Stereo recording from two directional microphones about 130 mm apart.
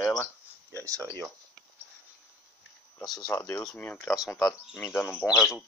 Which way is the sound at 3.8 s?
15° left (ahead or behind).